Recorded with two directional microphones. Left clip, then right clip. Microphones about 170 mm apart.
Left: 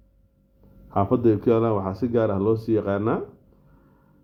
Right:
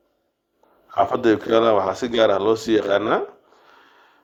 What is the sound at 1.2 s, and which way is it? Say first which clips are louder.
Speech: right 4 dB; 25° right (ahead or behind).